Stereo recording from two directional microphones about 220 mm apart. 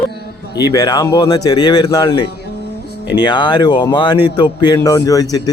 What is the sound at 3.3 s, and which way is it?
Speech, 20° left (ahead or behind).